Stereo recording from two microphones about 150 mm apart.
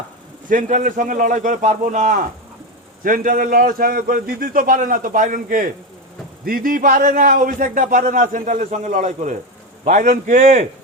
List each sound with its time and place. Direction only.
0.4 s a man's voice: 60° right (ahead or behind)
6.4 s a man's voice: 70° right (ahead or behind); by 10.7 s 50° right (ahead or behind)